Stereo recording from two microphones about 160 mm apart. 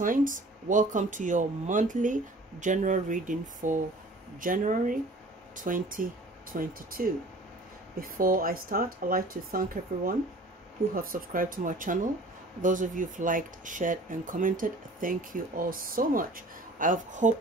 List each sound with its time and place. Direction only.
0.0 s speech: 55° right (ahead or behind)
8.2 s speech: 65° right (ahead or behind)